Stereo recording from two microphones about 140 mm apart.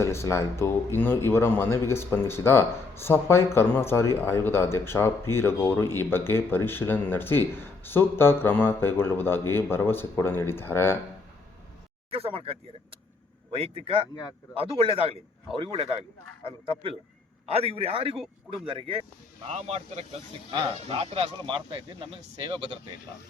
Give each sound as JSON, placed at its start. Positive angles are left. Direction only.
{"t": 0.0, "sound": "speech", "side_deg": 20}
{"t": 12.1, "sound": "speech", "side_deg": -45}
{"t": 17.5, "sound": "speech", "side_deg": -45}
{"t": 19.5, "sound": "speech", "side_deg": -50}